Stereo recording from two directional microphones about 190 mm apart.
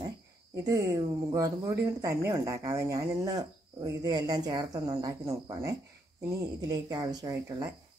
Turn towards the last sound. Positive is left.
turn(degrees=-15)  # may be behind; listen again after turning